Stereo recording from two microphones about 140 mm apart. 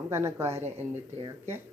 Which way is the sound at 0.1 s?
20° right (ahead or behind).